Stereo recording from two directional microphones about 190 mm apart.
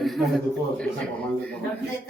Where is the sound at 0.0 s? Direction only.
Centre (ahead or behind).